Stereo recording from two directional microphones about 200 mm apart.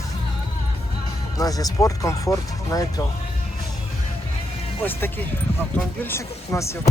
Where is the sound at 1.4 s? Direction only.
20° left (ahead or behind).